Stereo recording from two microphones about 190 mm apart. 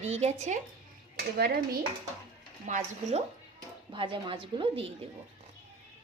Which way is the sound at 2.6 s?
40° right (ahead or behind).